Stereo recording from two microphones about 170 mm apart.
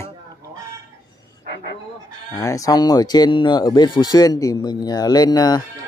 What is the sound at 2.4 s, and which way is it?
Speech, 20° left (ahead or behind).